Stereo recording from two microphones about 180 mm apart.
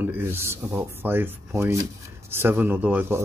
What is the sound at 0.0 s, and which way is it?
Speech, 10° right (ahead or behind).